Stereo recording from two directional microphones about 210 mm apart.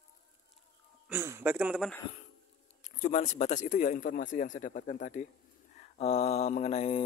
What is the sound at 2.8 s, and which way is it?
Speech, 35° left (ahead or behind).